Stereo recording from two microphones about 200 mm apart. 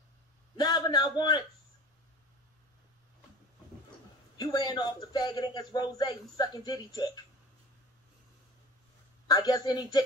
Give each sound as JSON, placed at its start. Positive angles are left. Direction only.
{"t": 0.6, "sound": "speech", "side_deg": 20}
{"t": 4.4, "sound": "a man's voice", "side_deg": 20}
{"t": 9.3, "sound": "a man's voice", "side_deg": 20}